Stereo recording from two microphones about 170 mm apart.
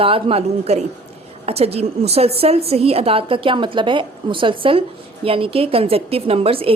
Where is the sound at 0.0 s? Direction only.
35° right (ahead or behind).